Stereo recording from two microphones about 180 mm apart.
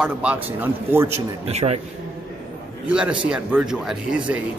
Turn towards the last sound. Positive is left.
turn(degrees=-5)  # may be behind; listen again after turning